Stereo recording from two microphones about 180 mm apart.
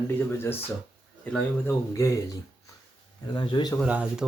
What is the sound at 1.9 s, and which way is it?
Speech, 15° left (ahead or behind).